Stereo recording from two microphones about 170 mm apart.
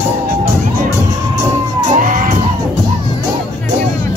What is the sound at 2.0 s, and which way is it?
Music, 50° right (ahead or behind).